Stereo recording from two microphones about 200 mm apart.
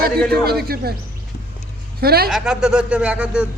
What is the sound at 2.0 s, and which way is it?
Speech, 50° right (ahead or behind).